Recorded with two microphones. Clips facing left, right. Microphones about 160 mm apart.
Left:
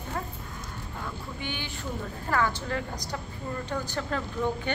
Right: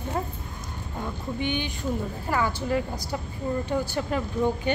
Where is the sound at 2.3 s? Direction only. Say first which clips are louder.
Right 2 dB; 10° right (ahead or behind).